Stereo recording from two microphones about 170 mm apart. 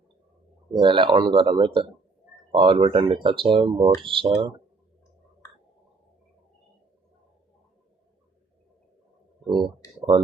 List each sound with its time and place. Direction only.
0.8 s speech: 30° right (ahead or behind)
9.5 s speech: 30° right (ahead or behind)